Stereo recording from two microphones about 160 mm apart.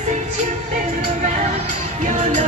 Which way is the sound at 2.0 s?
50° right (ahead or behind).